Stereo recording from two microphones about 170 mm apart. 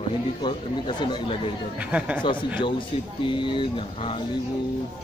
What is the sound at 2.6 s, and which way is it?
Speech, 30° left (ahead or behind).